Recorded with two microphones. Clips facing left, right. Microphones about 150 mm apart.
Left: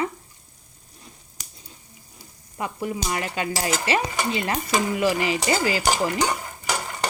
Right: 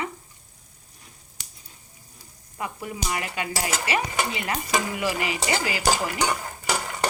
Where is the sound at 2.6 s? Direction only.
25° left (ahead or behind).